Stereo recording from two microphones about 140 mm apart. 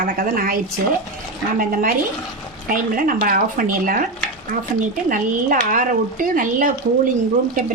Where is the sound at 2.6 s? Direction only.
80° right.